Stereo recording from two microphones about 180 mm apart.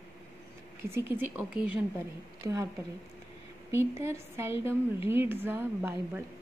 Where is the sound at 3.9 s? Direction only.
15° right (ahead or behind).